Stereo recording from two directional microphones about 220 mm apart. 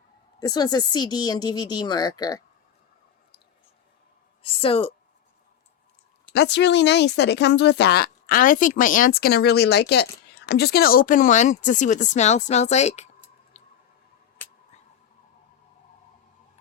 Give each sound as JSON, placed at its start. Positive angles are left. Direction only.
{"t": 0.3, "sound": "speech", "side_deg": 15}
{"t": 4.4, "sound": "speech", "side_deg": 25}
{"t": 6.3, "sound": "speech", "side_deg": 50}
{"t": 13.5, "sound": "squish", "side_deg": 30}